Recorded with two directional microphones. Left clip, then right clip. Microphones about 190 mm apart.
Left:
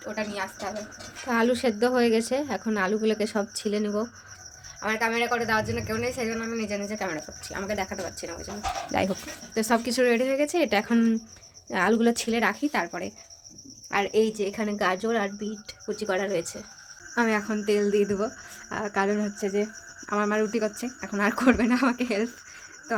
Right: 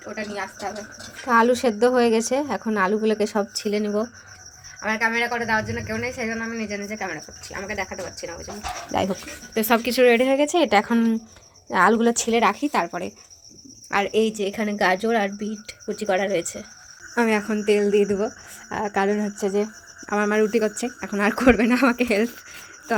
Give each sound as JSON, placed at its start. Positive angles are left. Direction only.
{"t": 0.0, "sound": "a woman's voice", "side_deg": 10}
{"t": 1.3, "sound": "speech", "side_deg": -10}
{"t": 4.8, "sound": "a woman's voice", "side_deg": 5}
{"t": 8.9, "sound": "speech", "side_deg": 0}
{"t": 12.4, "sound": "a woman's voice", "side_deg": -10}